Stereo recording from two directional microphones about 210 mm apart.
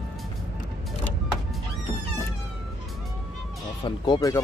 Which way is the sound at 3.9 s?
20° left (ahead or behind).